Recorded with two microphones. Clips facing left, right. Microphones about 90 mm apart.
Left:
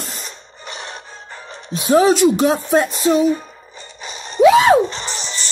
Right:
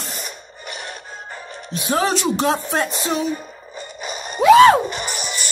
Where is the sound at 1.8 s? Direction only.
20° left (ahead or behind).